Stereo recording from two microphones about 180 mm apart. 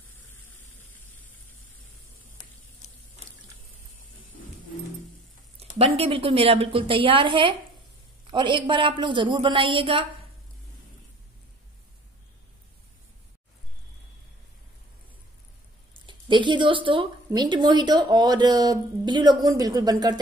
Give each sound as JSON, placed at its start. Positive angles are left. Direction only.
{"t": 2.8, "sound": "a sound", "side_deg": 40}
{"t": 5.6, "sound": "a woman's voice", "side_deg": -35}
{"t": 16.1, "sound": "a woman's voice", "side_deg": -25}